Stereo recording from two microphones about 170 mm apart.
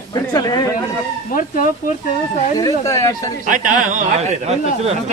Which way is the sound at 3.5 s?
50° right (ahead or behind).